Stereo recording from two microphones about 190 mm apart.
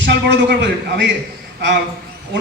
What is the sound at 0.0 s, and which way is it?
A man's voice, 65° right (ahead or behind).